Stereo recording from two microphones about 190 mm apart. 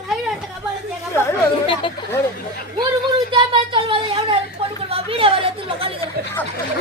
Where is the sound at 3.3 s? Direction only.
25° right (ahead or behind).